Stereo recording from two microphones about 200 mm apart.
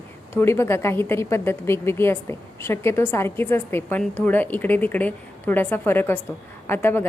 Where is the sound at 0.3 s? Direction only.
15° left (ahead or behind).